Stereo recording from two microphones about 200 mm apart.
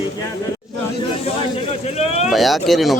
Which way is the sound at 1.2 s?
30° left (ahead or behind).